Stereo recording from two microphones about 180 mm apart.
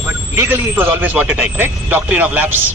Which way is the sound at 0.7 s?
10° right (ahead or behind).